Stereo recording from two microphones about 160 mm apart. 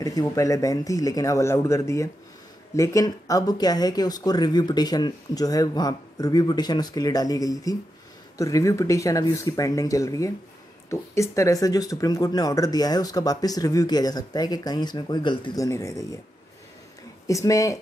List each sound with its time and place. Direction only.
0.0 s speech: 20° left (ahead or behind)
17.3 s speech: 20° left (ahead or behind)